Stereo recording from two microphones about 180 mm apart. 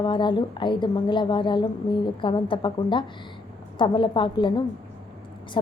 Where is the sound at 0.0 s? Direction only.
25° left (ahead or behind).